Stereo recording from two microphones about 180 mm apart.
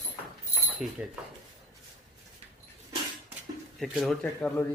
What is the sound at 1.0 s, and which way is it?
Speech, 5° right (ahead or behind).